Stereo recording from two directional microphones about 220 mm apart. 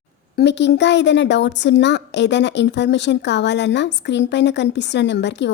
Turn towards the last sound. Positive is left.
turn(degrees=50)  # may be behind; listen again after turning